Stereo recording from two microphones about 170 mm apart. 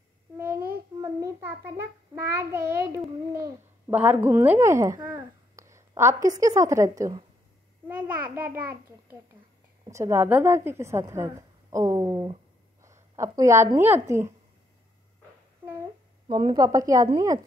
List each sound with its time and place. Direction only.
1.0 s a child's voice: 15° right (ahead or behind)
9.8 s a woman's voice: 15° right (ahead or behind)
12.8 s a sound: 15° right (ahead or behind)
13.7 s a woman's voice: 15° right (ahead or behind)
16.3 s a woman's voice: 30° right (ahead or behind)